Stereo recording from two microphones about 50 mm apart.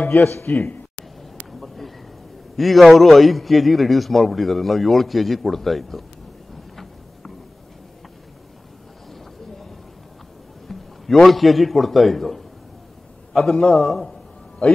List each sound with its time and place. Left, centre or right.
0.1 s speech: left
0.5 s speech: left
2.5 s a man's voice: centre
10.7 s a man's voice: centre